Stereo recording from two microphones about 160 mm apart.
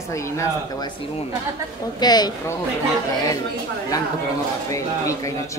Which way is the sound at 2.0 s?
25° left (ahead or behind).